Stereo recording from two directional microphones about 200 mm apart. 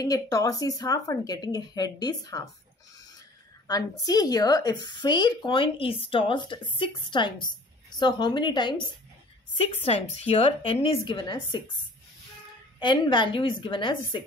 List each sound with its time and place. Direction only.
0.0 s speech: 15° left (ahead or behind)
3.6 s a woman's voice: 20° left (ahead or behind)
12.7 s a woman's voice: 20° left (ahead or behind)